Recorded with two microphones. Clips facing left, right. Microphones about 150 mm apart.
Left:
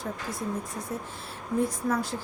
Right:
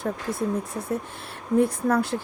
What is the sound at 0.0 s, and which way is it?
Speech, 60° right (ahead or behind).